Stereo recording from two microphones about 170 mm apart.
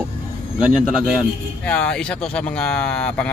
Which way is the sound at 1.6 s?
5° left (ahead or behind).